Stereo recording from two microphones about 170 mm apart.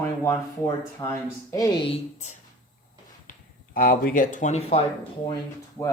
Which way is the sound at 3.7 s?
55° left (ahead or behind).